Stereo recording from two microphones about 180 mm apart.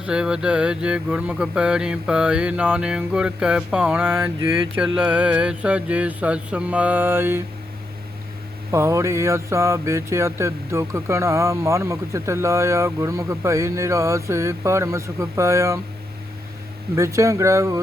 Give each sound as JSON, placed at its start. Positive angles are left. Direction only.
{"t": 0.0, "sound": "mantra", "side_deg": -5}
{"t": 4.9, "sound": "speech", "side_deg": -5}
{"t": 8.7, "sound": "speech", "side_deg": -15}
{"t": 16.9, "sound": "speech", "side_deg": -15}